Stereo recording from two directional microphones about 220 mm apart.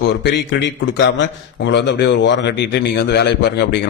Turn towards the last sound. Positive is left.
turn(degrees=50)  # may be behind; listen again after turning